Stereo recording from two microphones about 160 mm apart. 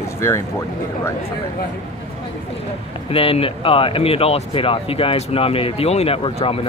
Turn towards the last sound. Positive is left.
turn(degrees=35)  # may be behind; listen again after turning